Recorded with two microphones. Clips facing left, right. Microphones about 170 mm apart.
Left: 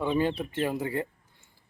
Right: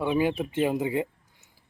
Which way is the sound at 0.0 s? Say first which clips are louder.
Right 2 dB; 10° right (ahead or behind).